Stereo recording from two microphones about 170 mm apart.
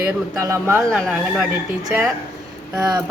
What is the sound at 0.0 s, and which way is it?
Speech, 15° right (ahead or behind).